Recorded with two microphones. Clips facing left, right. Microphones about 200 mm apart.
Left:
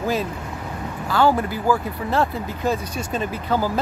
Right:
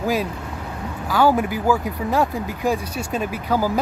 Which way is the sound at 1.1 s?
10° right (ahead or behind).